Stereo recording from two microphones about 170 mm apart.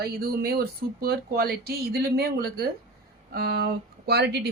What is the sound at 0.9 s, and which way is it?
Speech, 65° right (ahead or behind).